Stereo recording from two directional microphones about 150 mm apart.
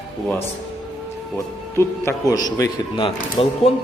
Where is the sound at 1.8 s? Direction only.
20° left (ahead or behind); by 3.7 s 35° left (ahead or behind).